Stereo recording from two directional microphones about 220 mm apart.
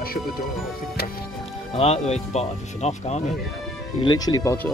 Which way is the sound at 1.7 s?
30° left (ahead or behind).